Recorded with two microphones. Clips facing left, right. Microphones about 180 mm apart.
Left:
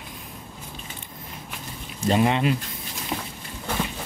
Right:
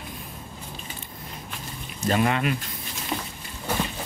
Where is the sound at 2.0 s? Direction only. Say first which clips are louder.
Left 2 dB; 25° left (ahead or behind).